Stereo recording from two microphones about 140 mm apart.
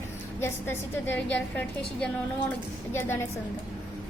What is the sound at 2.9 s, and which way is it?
Speech, 15° left (ahead or behind).